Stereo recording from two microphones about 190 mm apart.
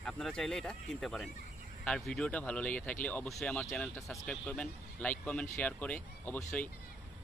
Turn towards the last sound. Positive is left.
turn(degrees=10)  # may be behind; listen again after turning